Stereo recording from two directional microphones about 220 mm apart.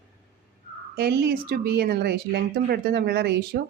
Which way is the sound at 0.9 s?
45° right (ahead or behind).